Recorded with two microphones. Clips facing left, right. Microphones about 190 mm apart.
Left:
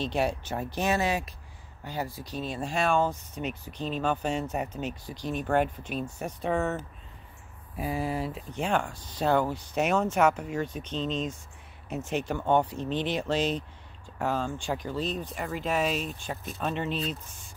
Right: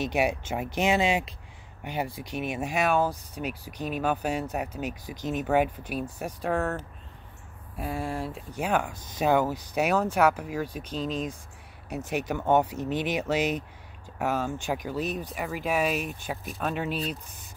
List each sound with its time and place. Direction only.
0.0 s speech: 10° right (ahead or behind)
4.8 s speech: 15° right (ahead or behind); by 8.3 s 5° left (ahead or behind)
8.4 s speech: 5° right (ahead or behind)